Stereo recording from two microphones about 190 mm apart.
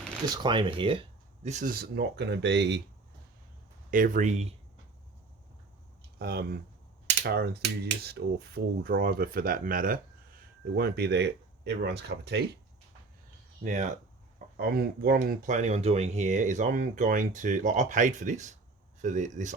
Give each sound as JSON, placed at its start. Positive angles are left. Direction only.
{"t": 0.3, "sound": "speech", "side_deg": -25}
{"t": 1.8, "sound": "speech", "side_deg": -60}
{"t": 3.9, "sound": "speech", "side_deg": -45}
{"t": 6.1, "sound": "speech", "side_deg": -55}
{"t": 13.6, "sound": "speech", "side_deg": -40}
{"t": 14.5, "sound": "speech", "side_deg": -55}